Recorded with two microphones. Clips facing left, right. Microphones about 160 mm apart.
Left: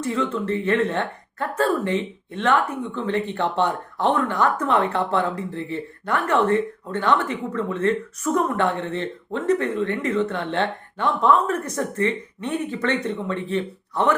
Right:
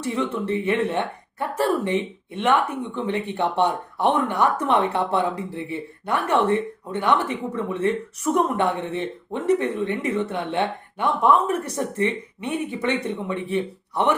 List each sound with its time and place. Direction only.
0.0 s speech: 20° right (ahead or behind)
11.6 s speech: 25° right (ahead or behind)